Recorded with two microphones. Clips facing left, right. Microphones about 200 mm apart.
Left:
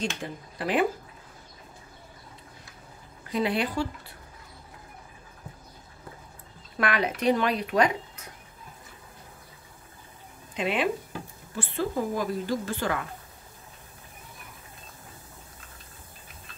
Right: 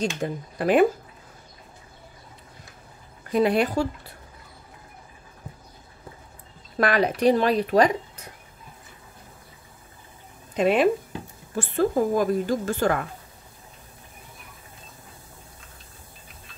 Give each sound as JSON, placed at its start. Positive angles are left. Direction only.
{"t": 0.0, "sound": "a woman's voice", "side_deg": -45}
{"t": 3.3, "sound": "a woman's voice", "side_deg": -45}
{"t": 6.8, "sound": "speech", "side_deg": -40}
{"t": 10.5, "sound": "a woman's voice", "side_deg": -45}